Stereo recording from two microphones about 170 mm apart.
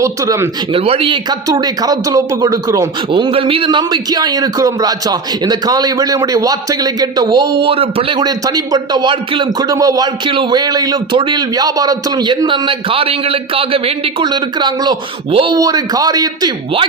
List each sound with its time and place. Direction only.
0.0 s speech: 20° right (ahead or behind)
0.7 s a man's voice: 35° right (ahead or behind); by 2.9 s 20° right (ahead or behind)
3.1 s a man's voice: 30° right (ahead or behind)